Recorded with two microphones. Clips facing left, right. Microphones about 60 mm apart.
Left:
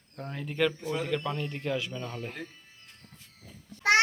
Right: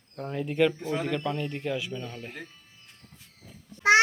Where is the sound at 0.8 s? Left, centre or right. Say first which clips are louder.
Right 2 dB; right.